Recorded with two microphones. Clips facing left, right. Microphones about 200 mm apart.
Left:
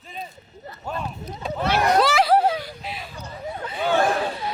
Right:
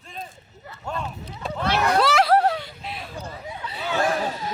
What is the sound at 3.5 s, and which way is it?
Chatter, 50° left (ahead or behind).